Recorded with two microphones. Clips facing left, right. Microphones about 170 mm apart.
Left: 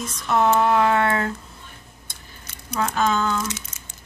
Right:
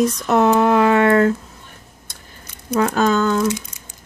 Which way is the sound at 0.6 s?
60° right (ahead or behind).